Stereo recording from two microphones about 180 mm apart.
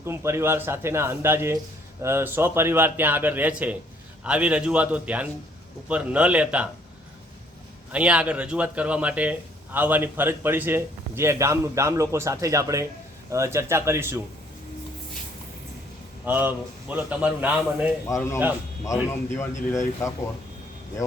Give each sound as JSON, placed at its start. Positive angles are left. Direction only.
{"t": 0.0, "sound": "a man's voice", "side_deg": -15}
{"t": 7.9, "sound": "a man's voice", "side_deg": -5}
{"t": 16.2, "sound": "a man's voice", "side_deg": -10}
{"t": 18.0, "sound": "a man's voice", "side_deg": 15}